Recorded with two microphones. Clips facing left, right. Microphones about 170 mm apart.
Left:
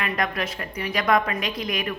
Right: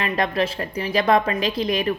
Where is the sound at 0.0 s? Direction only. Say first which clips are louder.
Right 5 dB; 30° right (ahead or behind).